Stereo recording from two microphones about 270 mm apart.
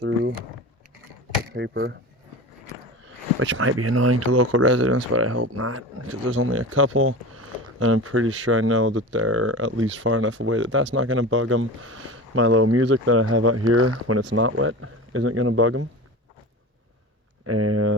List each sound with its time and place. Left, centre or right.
0.0 s a sound: right
1.5 s speech: right
3.4 s speech: right
17.4 s speech: right